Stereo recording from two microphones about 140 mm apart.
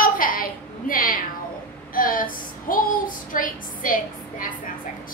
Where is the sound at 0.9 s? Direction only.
80° left.